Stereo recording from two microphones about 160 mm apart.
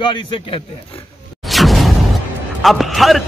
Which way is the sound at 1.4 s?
Centre (ahead or behind).